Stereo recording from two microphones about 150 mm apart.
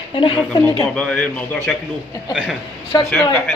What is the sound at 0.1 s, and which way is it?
Speech, 35° left (ahead or behind).